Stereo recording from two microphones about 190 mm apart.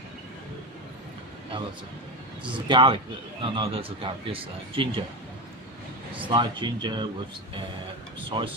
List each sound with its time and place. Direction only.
1.5 s speech: 25° right (ahead or behind)
6.1 s speech: 25° right (ahead or behind)
8.3 s speech: 25° right (ahead or behind)